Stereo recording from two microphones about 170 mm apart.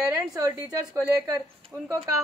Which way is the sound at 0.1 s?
15° right (ahead or behind).